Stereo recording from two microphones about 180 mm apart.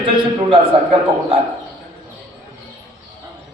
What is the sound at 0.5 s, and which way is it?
Speech, 30° right (ahead or behind).